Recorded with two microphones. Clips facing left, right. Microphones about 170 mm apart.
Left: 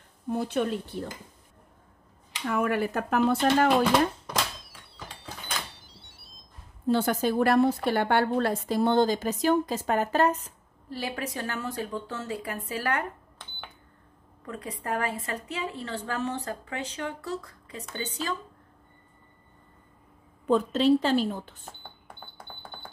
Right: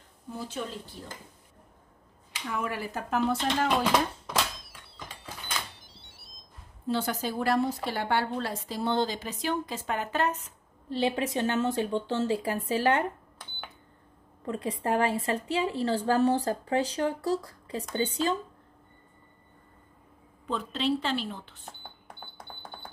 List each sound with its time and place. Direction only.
0.3 s speech: 65° left (ahead or behind)
2.4 s speech: 55° left (ahead or behind)
6.9 s a woman's voice: 55° left (ahead or behind)
10.9 s speech: 25° right (ahead or behind)
14.4 s a woman's voice: 30° right (ahead or behind)
20.4 s a woman's voice: 45° left (ahead or behind)